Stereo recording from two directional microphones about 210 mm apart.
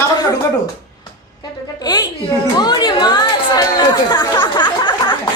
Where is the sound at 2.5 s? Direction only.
20° left (ahead or behind).